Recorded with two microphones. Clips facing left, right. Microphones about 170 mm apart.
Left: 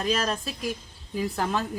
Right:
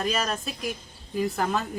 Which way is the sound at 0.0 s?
5° right (ahead or behind).